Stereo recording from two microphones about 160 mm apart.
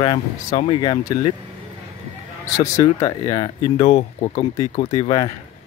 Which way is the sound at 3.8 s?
40° left (ahead or behind).